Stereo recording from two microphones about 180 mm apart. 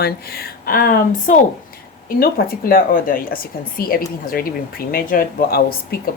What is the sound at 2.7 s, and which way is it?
A woman's voice, 50° left (ahead or behind).